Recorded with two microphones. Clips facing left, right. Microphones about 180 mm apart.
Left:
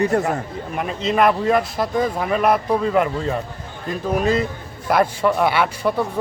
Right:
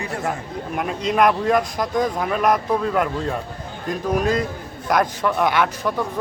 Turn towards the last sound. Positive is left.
turn(degrees=10)  # may be behind; listen again after turning